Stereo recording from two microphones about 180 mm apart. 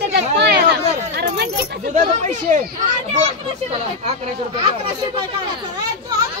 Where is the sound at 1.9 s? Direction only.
40° right (ahead or behind).